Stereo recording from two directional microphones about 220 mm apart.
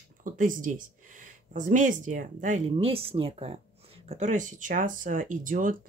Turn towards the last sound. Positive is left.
turn(degrees=-35)  # may be behind; listen again after turning